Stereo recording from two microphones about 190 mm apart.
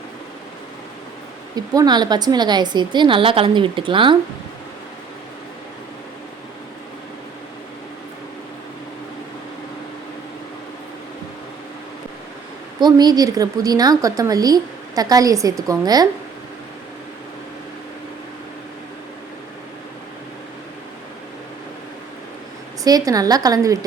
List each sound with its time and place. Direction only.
1.5 s a woman's voice: 20° right (ahead or behind)
12.8 s a woman's voice: 20° right (ahead or behind)
22.8 s a woman's voice: 20° right (ahead or behind)